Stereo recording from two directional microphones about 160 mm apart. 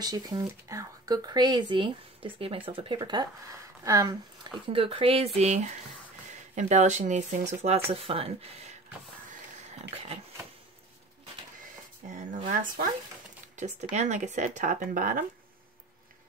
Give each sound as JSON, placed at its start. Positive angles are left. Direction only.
{"t": 0.0, "sound": "speech", "side_deg": -25}
{"t": 4.6, "sound": "speech", "side_deg": -35}
{"t": 9.3, "sound": "pig", "side_deg": -45}
{"t": 12.1, "sound": "a sound", "side_deg": -50}
{"t": 12.4, "sound": "speech", "side_deg": -60}
{"t": 13.6, "sound": "speech", "side_deg": -45}